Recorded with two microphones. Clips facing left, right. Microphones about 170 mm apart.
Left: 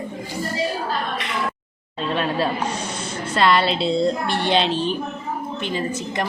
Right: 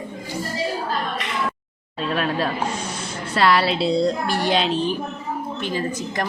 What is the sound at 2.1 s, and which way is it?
A woman's voice, centre (ahead or behind).